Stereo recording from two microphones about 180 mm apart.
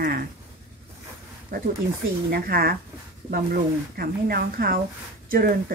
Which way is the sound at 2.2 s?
60° right (ahead or behind).